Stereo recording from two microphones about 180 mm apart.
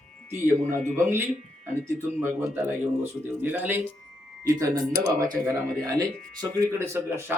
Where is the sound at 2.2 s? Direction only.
10° right (ahead or behind).